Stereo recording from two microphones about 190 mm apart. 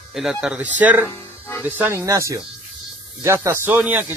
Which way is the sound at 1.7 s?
10° right (ahead or behind).